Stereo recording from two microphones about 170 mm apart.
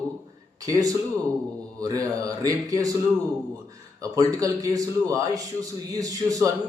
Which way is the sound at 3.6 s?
20° right (ahead or behind).